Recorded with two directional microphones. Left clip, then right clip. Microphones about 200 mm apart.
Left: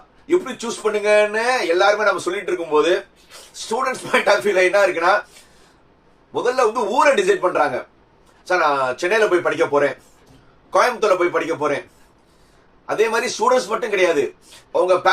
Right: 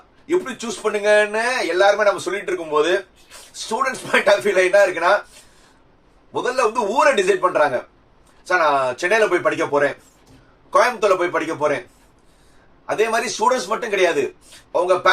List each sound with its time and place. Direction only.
0.3 s speech: 15° right (ahead or behind)
6.3 s speech: 15° right (ahead or behind)
12.9 s speech: 15° right (ahead or behind)